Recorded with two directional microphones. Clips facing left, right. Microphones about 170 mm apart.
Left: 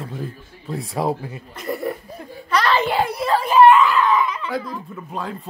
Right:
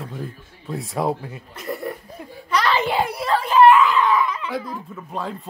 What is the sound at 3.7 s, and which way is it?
Baby cry, 15° right (ahead or behind).